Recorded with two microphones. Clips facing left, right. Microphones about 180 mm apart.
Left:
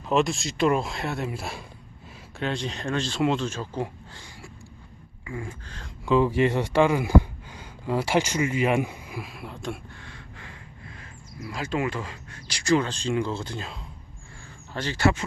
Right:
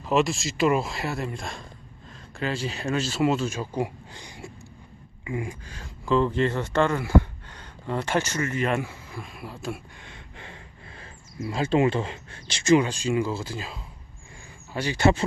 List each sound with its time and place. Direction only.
0.0 s speech: centre (ahead or behind)
6.1 s speech: 10° left (ahead or behind)
10.0 s a sound: 20° right (ahead or behind)
12.8 s speech: 10° right (ahead or behind)